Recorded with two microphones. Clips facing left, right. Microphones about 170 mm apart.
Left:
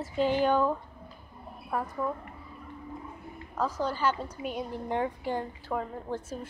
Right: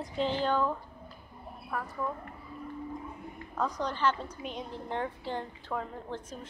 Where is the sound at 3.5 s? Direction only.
5° left (ahead or behind).